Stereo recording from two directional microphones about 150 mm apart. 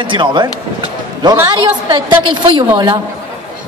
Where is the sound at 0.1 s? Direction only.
30° right (ahead or behind).